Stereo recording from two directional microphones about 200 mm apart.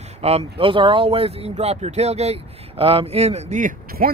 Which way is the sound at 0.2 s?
30° right (ahead or behind).